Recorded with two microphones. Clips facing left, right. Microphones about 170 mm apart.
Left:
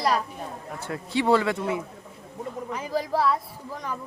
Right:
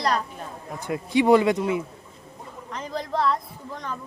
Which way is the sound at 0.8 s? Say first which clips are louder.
Right 5 dB; 15° right (ahead or behind).